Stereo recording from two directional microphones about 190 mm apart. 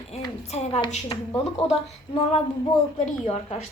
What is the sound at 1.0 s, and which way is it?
Speech, 20° left (ahead or behind).